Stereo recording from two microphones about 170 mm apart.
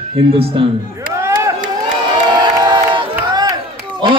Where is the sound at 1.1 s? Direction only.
15° right (ahead or behind).